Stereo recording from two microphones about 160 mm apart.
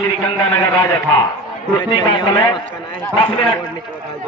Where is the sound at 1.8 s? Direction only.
30° left (ahead or behind).